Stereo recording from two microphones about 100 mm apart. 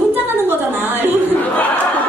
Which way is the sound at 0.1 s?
20° right (ahead or behind).